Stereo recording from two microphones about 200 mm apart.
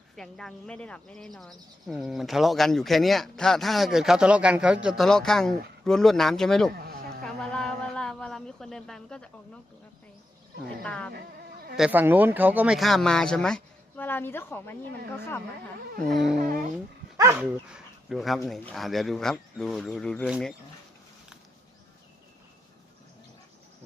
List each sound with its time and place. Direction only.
0.2 s speech: centre (ahead or behind)
6.7 s insect: 50° right (ahead or behind)
7.3 s a sound: centre (ahead or behind)
10.8 s speech: 5° left (ahead or behind)
11.8 s speech: 10° right (ahead or behind); by 15.4 s 10° left (ahead or behind)
16.0 s speech: centre (ahead or behind)
17.2 s speech: 15° right (ahead or behind)